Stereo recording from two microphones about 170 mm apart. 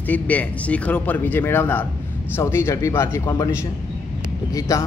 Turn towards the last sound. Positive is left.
turn(degrees=20)  # may be behind; listen again after turning